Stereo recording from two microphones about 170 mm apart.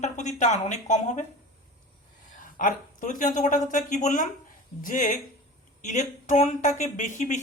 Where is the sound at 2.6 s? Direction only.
50° left (ahead or behind).